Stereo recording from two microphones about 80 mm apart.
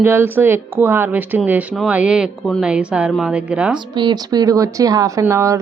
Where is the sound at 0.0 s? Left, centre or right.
Right.